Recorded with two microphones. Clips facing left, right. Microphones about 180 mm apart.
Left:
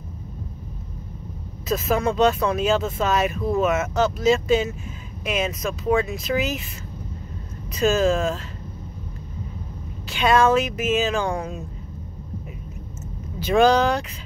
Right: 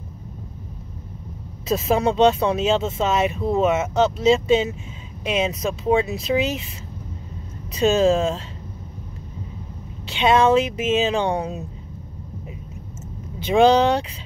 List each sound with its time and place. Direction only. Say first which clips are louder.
1.7 s speech: right 2 dB; 30° right (ahead or behind)
7.8 s speech: right 2 dB; 30° right (ahead or behind)
10.0 s speech: right 1 dB; 25° right (ahead or behind)
13.4 s speech: right 2 dB; 25° right (ahead or behind)